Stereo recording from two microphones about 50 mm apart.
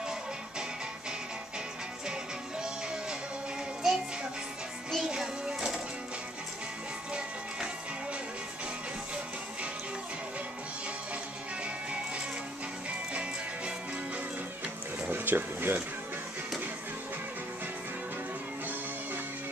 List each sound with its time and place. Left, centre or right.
2.6 s music: centre
7.2 s music: centre
13.1 s music: right
15.0 s speech: right